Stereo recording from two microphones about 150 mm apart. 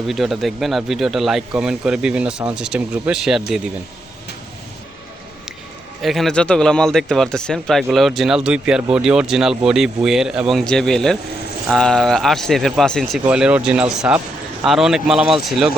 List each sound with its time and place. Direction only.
0.1 s speech: centre (ahead or behind)
6.0 s speech: centre (ahead or behind)